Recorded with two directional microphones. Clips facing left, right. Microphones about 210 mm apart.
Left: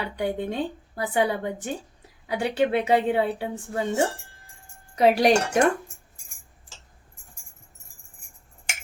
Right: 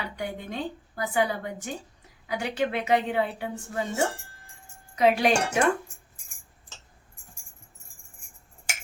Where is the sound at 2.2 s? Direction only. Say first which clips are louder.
Left 4 dB; 30° left (ahead or behind).